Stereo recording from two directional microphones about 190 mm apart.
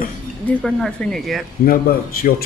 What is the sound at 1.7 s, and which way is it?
Speech, 50° left (ahead or behind).